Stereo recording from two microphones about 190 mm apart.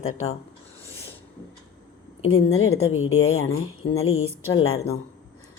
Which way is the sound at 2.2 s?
90° left.